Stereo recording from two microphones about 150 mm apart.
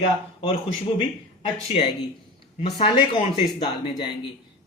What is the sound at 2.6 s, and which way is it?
Speech, 40° left (ahead or behind).